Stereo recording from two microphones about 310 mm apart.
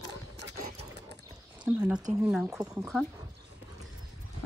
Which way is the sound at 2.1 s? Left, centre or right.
Centre.